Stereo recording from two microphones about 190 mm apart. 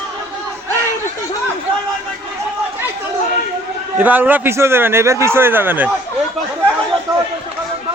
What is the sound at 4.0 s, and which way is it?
A man's voice, 10° right (ahead or behind).